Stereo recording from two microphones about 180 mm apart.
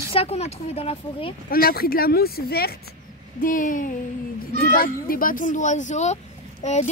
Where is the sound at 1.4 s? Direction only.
55° left (ahead or behind).